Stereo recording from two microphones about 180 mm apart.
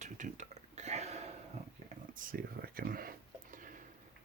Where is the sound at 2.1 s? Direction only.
50° right (ahead or behind).